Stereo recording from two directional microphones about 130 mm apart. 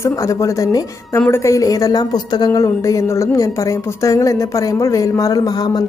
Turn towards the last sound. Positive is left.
turn(degrees=30)  # may be behind; listen again after turning